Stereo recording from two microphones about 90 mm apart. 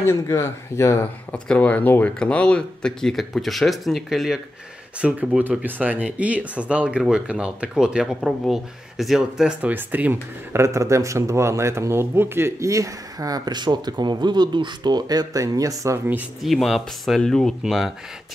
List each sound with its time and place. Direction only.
0.0 s speech: 30° left (ahead or behind)
1.0 s speech: 15° left (ahead or behind)
5.0 s speech: 15° right (ahead or behind)
10.6 s speech: 35° right (ahead or behind)
16.4 s speech: centre (ahead or behind)